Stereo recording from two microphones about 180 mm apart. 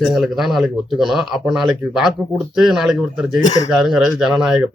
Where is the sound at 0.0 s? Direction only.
Centre (ahead or behind).